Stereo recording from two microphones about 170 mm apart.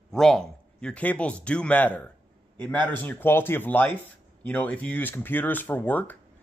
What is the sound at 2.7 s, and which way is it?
Speech, 25° right (ahead or behind).